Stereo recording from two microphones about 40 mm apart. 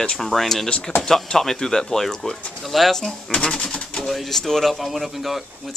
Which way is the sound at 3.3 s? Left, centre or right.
Centre.